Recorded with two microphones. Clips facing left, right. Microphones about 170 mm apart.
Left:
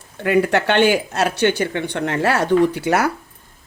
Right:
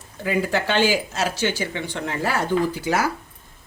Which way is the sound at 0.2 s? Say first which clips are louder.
Left 6 dB; 65° left (ahead or behind).